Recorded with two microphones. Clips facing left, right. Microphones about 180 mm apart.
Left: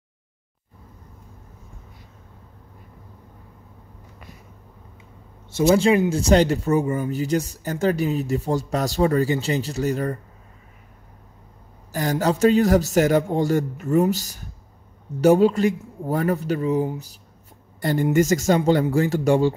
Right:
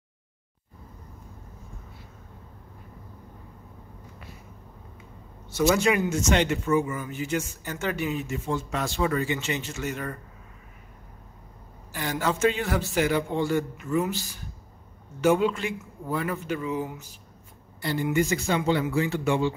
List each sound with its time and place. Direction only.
5.5 s speech: 25° left (ahead or behind)
11.9 s speech: 40° left (ahead or behind)
17.7 s speech: 45° left (ahead or behind)